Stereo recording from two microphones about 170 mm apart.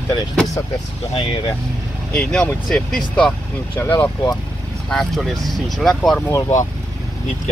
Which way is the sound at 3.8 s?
15° left (ahead or behind).